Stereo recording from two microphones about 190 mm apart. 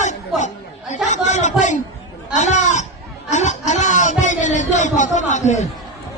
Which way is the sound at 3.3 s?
40° left (ahead or behind).